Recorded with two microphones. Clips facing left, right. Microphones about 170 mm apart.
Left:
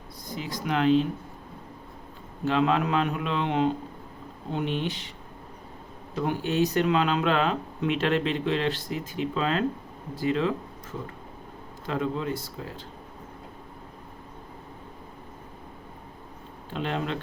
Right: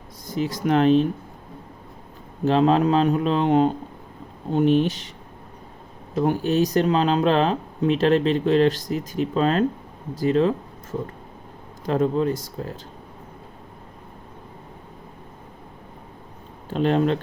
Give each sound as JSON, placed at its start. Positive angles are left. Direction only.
{"t": 0.3, "sound": "speech", "side_deg": -45}
{"t": 2.4, "sound": "speech", "side_deg": -35}
{"t": 6.1, "sound": "speech", "side_deg": -40}
{"t": 16.6, "sound": "speech", "side_deg": -40}